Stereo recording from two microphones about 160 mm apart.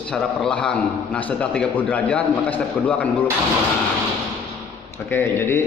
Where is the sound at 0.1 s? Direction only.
5° left (ahead or behind).